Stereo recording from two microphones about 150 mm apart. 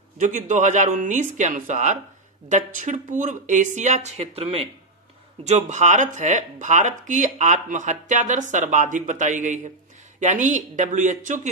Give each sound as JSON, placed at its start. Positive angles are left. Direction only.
{"t": 0.2, "sound": "speech", "side_deg": -55}